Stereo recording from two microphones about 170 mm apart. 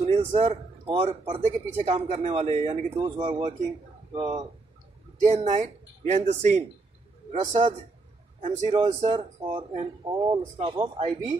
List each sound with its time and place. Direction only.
0.0 s a man's voice: 35° right (ahead or behind)
5.2 s a man's voice: 45° right (ahead or behind)
9.5 s speech: 25° right (ahead or behind)